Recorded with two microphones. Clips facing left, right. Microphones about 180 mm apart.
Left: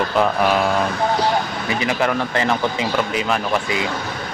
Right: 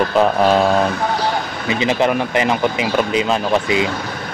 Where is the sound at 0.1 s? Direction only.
25° right (ahead or behind).